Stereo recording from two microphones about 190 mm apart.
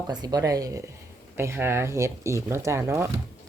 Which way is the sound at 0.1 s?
20° right (ahead or behind).